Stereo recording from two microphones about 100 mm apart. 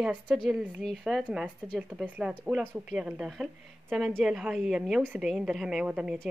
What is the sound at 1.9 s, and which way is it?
A woman's voice, 10° right (ahead or behind).